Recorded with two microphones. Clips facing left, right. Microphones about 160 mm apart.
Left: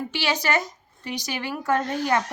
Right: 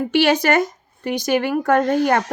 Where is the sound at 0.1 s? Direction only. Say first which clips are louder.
Right 10 dB; 55° right (ahead or behind).